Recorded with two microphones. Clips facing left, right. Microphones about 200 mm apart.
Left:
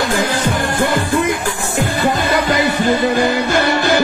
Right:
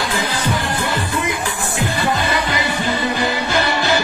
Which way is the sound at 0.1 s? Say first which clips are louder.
Left 4 dB; 50° left (ahead or behind).